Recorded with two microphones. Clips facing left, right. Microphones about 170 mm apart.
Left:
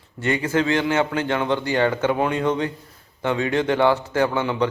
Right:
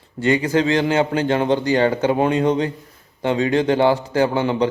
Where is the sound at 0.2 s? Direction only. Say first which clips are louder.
Right 4 dB; 30° right (ahead or behind).